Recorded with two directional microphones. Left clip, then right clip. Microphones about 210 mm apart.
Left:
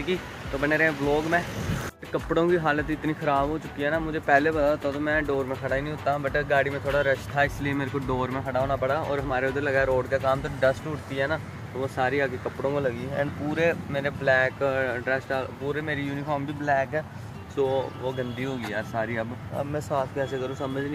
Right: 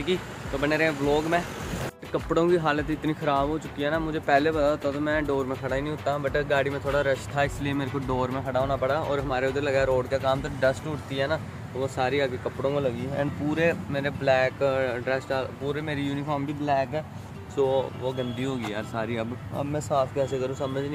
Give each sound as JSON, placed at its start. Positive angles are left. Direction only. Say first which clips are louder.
{"t": 0.0, "sound": "speech", "louder": "right 1 dB", "side_deg": -5}